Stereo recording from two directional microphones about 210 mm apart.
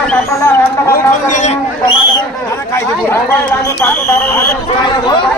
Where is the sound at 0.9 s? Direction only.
35° left (ahead or behind).